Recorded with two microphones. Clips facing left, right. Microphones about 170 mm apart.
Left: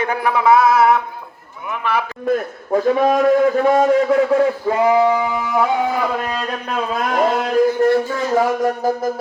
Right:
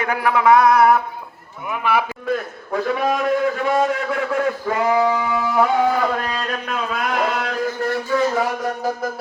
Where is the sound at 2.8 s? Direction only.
35° left (ahead or behind).